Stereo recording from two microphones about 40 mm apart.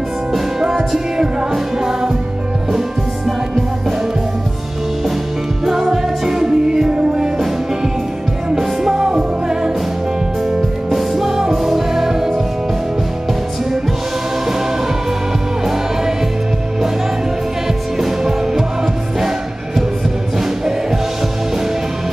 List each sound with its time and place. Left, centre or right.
0.3 s music: centre
5.7 s music: centre
10.9 s music: centre
17.9 s music: centre